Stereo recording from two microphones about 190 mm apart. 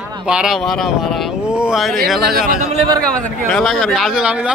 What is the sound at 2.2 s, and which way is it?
Speech, 50° right (ahead or behind).